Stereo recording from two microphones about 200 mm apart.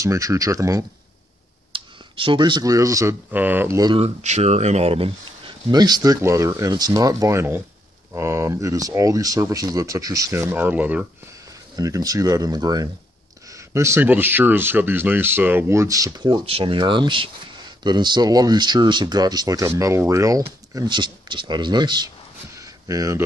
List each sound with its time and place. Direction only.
0.0 s speech: 15° right (ahead or behind)